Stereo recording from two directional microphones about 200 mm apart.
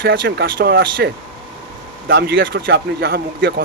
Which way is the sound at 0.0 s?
60° right (ahead or behind).